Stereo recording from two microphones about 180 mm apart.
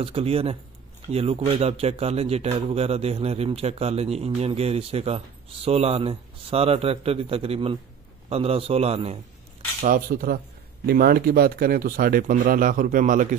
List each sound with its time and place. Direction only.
0.0 s a man's voice: 30° right (ahead or behind)
9.8 s speech: 50° right (ahead or behind)